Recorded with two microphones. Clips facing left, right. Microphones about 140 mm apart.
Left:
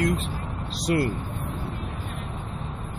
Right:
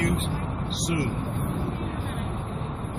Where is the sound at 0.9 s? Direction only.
60° left (ahead or behind).